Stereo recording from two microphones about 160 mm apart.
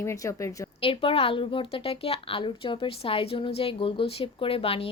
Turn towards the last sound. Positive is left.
turn(degrees=35)  # may be behind; listen again after turning